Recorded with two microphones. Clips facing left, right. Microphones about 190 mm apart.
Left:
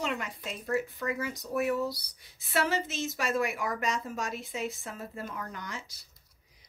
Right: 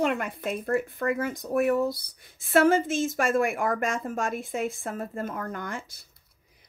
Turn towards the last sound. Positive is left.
turn(degrees=-55)  # may be behind; listen again after turning